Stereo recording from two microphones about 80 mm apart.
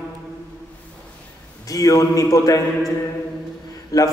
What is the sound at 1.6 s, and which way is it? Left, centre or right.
Speech, left.